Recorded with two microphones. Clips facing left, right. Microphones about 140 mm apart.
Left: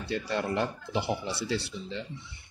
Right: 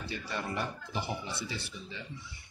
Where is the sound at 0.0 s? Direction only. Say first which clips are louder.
Left 7 dB; 75° left (ahead or behind).